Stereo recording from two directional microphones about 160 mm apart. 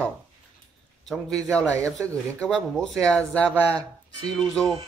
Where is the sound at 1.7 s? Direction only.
20° right (ahead or behind).